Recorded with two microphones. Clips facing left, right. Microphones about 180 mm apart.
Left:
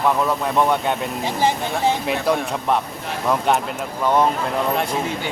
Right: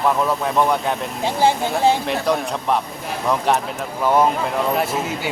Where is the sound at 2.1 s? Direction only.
Centre (ahead or behind).